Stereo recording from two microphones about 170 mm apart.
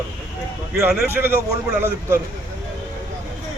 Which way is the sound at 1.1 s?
10° right (ahead or behind).